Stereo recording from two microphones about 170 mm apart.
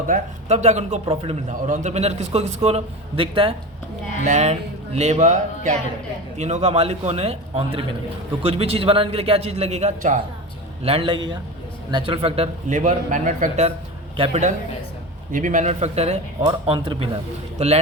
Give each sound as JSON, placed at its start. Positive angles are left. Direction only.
{"t": 0.1, "sound": "speech", "side_deg": -40}
{"t": 4.2, "sound": "speech", "side_deg": -45}
{"t": 10.8, "sound": "speech", "side_deg": -30}
{"t": 15.3, "sound": "speech", "side_deg": -50}
{"t": 17.6, "sound": "speech", "side_deg": -40}